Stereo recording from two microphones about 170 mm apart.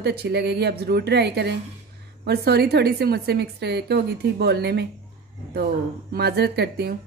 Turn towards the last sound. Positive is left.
turn(degrees=-70)  # may be behind; listen again after turning